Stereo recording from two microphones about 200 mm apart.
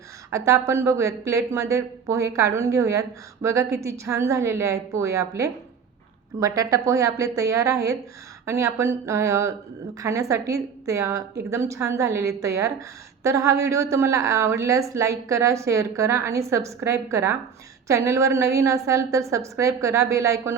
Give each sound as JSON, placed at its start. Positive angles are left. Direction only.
{"t": 0.3, "sound": "a woman's voice", "side_deg": -15}